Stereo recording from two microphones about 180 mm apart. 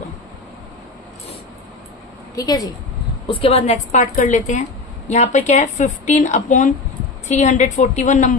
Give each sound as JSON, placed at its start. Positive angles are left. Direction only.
{"t": 2.3, "sound": "a woman's voice", "side_deg": 20}
{"t": 3.2, "sound": "a woman's voice", "side_deg": 30}